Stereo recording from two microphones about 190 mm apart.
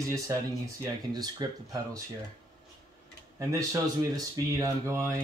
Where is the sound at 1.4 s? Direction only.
20° right (ahead or behind).